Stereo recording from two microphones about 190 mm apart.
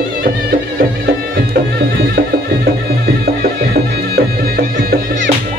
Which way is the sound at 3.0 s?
55° right (ahead or behind).